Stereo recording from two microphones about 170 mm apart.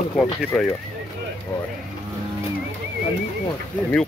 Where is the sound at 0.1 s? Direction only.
5° left (ahead or behind).